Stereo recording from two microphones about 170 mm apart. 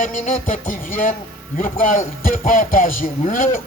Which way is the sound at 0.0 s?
50° left (ahead or behind).